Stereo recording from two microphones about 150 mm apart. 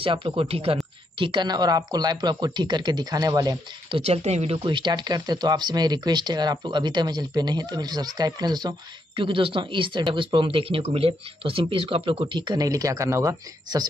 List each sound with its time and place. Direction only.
0.0 s speech: 35° right (ahead or behind)
4.0 s speech: 45° right (ahead or behind)
4.6 s speech: 30° right (ahead or behind)